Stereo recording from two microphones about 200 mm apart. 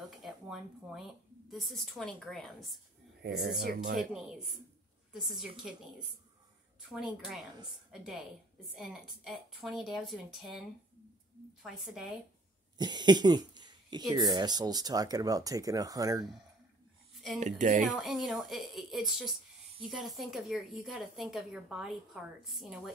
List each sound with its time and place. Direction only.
0.2 s speech: centre (ahead or behind)
3.4 s speech: 50° right (ahead or behind)
4.0 s speech: centre (ahead or behind)
6.9 s speech: 5° right (ahead or behind)
11.6 s speech: centre (ahead or behind)
12.7 s speech: 20° right (ahead or behind)
17.4 s speech: 40° right (ahead or behind)
17.9 s speech: centre (ahead or behind)